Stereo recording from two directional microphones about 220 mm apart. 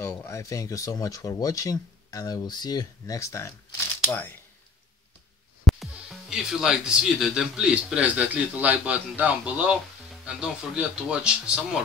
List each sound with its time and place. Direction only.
0.0 s speech: 10° left (ahead or behind)
5.7 s music: centre (ahead or behind)
6.3 s a man's voice: 5° right (ahead or behind)